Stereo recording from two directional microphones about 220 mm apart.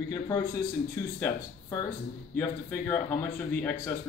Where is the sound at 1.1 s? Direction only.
10° left (ahead or behind).